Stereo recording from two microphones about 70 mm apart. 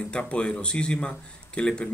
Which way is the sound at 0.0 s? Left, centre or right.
Centre.